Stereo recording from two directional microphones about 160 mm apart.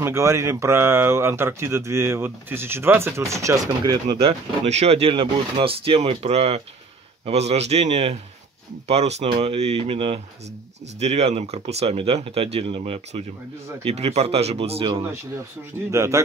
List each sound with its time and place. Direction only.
0.0 s speech: 15° right (ahead or behind)
4.2 s speech: 40° right (ahead or behind)
15.9 s speech: 20° right (ahead or behind)